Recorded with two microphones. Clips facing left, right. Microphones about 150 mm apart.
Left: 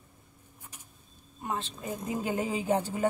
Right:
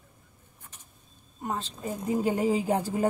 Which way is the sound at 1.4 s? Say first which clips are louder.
Right 2 dB; 35° right (ahead or behind).